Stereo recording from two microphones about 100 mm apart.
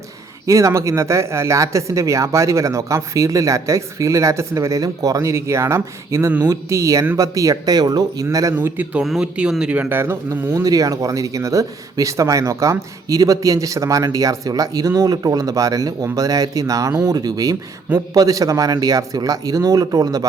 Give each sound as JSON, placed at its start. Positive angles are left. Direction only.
{"t": 0.4, "sound": "speech", "side_deg": -30}
{"t": 8.5, "sound": "a man's voice", "side_deg": -20}